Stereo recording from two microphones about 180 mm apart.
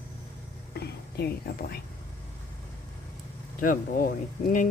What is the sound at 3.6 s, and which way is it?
Speech, 50° left (ahead or behind).